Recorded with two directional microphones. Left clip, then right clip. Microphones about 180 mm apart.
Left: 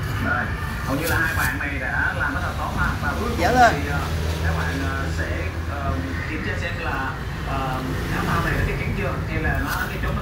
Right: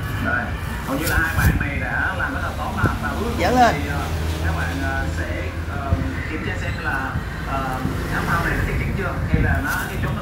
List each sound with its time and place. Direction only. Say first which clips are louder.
3.4 s speech: even; 40° right (ahead or behind)